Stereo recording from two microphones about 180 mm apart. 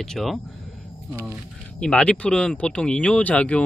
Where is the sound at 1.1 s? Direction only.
10° right (ahead or behind).